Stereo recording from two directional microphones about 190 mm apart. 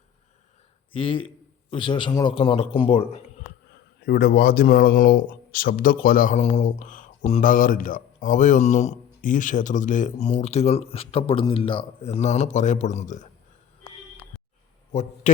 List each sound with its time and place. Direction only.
0.9 s a man's voice: 30° left (ahead or behind)
4.0 s speech: 55° left (ahead or behind); by 13.2 s 40° left (ahead or behind)